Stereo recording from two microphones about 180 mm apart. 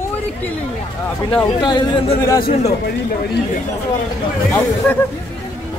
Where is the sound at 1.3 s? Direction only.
25° left (ahead or behind).